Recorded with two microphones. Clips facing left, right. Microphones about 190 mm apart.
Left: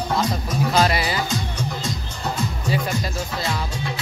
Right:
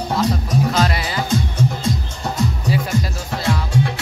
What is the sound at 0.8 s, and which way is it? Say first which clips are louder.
Speech: left 1 dB; 10° left (ahead or behind).